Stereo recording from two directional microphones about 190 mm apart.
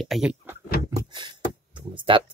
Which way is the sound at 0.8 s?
20° right (ahead or behind).